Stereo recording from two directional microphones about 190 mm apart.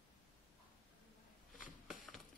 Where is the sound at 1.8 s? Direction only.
Centre (ahead or behind).